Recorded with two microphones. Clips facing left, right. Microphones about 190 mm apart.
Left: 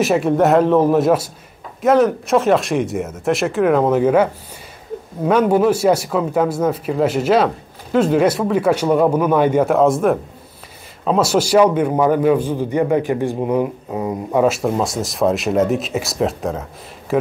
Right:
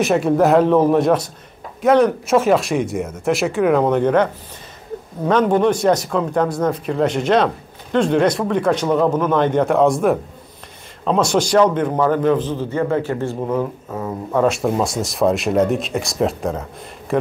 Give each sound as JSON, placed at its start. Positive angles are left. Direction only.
{"t": 0.0, "sound": "speech", "side_deg": 0}
{"t": 14.4, "sound": "speech", "side_deg": 0}